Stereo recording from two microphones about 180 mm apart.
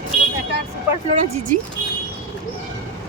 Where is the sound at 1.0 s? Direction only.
35° right (ahead or behind).